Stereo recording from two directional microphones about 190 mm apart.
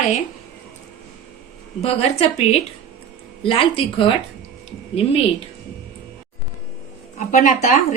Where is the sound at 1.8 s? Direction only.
35° left (ahead or behind).